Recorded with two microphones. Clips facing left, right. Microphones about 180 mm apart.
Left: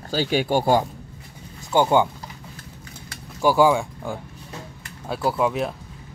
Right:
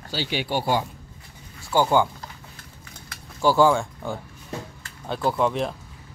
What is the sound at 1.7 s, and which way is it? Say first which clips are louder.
Speech: left 2 dB; 20° left (ahead or behind).